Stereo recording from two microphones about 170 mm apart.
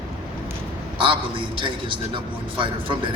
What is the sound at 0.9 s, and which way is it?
A man's voice, 30° right (ahead or behind).